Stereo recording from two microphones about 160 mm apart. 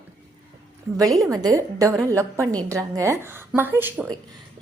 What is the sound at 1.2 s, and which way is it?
A woman's voice, 20° right (ahead or behind).